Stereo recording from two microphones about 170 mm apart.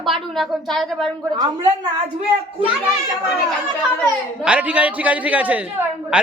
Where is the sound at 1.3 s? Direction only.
25° right (ahead or behind).